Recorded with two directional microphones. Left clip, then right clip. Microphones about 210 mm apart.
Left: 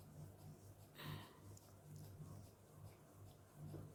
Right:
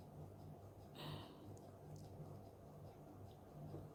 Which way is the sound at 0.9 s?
5° right (ahead or behind).